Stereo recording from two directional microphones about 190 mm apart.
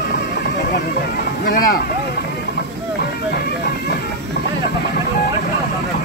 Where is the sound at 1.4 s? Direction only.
50° left (ahead or behind).